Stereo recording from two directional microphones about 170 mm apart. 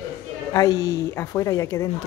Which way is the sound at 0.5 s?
20° left (ahead or behind).